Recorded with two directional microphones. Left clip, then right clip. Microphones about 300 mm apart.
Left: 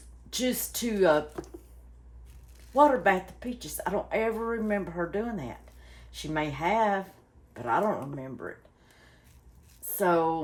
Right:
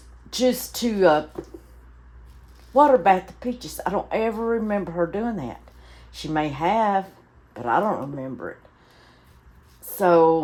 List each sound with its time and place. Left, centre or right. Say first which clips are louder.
0.3 s speech: right 9 dB; right
2.7 s speech: right 6 dB; right
10.0 s speech: right 9 dB; right